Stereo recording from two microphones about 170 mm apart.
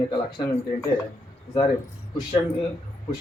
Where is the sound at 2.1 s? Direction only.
25° left (ahead or behind).